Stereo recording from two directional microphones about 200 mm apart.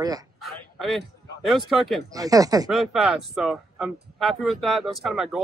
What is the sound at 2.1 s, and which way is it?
Speech, 15° right (ahead or behind).